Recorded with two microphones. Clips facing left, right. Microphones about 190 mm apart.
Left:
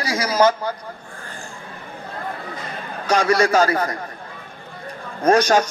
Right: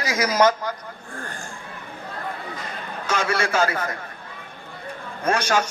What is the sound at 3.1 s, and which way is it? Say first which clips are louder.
Speech: left 7 dB; 35° left (ahead or behind).